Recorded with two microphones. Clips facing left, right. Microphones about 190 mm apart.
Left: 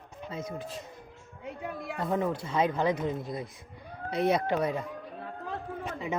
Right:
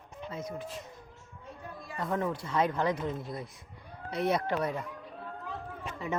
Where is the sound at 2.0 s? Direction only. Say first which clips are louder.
Left 2 dB; 20° left (ahead or behind).